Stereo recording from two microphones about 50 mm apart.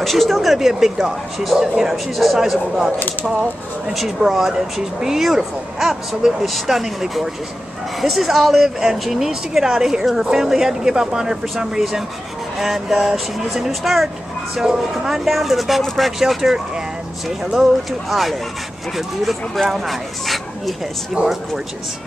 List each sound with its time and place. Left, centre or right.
0.0 s speech: centre
3.9 s speech: centre
11.4 s speech: centre
21.2 s speech: right